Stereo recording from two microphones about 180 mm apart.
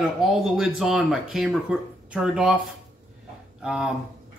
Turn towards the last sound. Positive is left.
turn(degrees=-5)  # may be behind; listen again after turning